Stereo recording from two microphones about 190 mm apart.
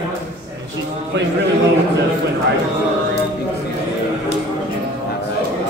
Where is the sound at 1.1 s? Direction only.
65° right (ahead or behind).